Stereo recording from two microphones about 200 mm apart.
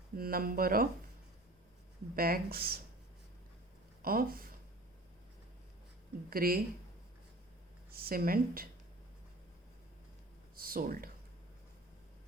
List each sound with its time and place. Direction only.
0.2 s speech: 50° right (ahead or behind)
2.1 s speech: 45° right (ahead or behind)
4.0 s speech: 45° right (ahead or behind)
6.3 s speech: 50° right (ahead or behind)
7.9 s speech: 50° right (ahead or behind)
10.5 s speech: 45° right (ahead or behind)